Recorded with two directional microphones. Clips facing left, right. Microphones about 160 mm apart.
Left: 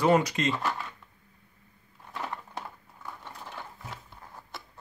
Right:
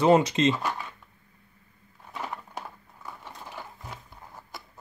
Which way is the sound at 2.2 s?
10° right (ahead or behind).